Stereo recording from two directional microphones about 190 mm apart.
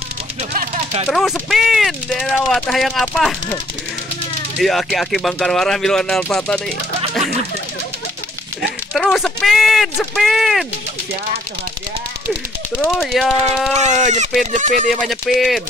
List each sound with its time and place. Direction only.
0.5 s a sound: 35° right (ahead or behind)
1.0 s speech: centre (ahead or behind)
4.6 s speech: centre (ahead or behind)
8.9 s speech: centre (ahead or behind)
12.8 s speech: centre (ahead or behind)
14.5 s speech: 40° right (ahead or behind)
15.0 s speech: centre (ahead or behind)